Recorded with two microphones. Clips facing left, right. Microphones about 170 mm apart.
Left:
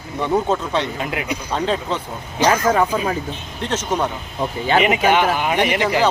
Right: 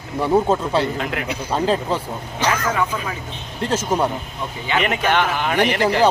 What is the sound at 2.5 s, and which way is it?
Speech, 35° left (ahead or behind).